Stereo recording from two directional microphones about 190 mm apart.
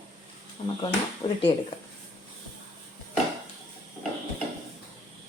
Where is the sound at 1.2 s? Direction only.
25° left (ahead or behind).